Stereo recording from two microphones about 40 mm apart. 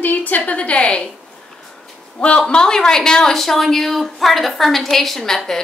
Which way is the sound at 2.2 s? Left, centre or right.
Left.